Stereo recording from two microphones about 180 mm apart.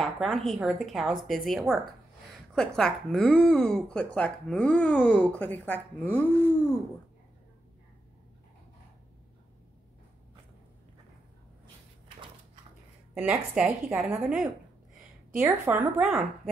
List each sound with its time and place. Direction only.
0.0 s speech: centre (ahead or behind)
13.1 s a woman's voice: 5° right (ahead or behind)